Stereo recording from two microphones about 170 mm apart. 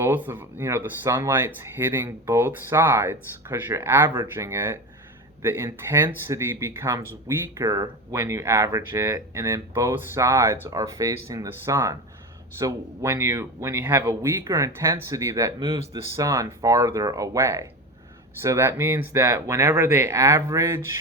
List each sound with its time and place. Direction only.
0.0 s speech: 10° right (ahead or behind)